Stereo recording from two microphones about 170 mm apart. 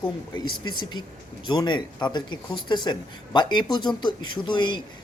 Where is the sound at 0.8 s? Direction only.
25° left (ahead or behind).